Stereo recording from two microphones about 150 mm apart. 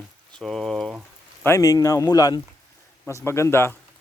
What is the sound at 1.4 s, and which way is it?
Speech, 20° left (ahead or behind).